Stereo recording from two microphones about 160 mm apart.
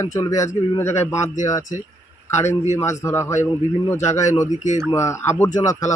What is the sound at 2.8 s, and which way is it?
Speech, 20° left (ahead or behind).